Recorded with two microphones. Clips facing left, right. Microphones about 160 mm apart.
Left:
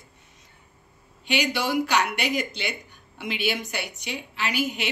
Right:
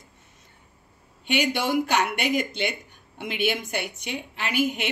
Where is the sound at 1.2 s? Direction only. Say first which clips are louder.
Right 1 dB; 50° right (ahead or behind).